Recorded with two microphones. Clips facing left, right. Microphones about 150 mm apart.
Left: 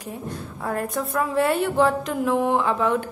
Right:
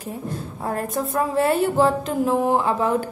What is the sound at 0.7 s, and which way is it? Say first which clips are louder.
A woman's voice: right 1 dB; 25° right (ahead or behind).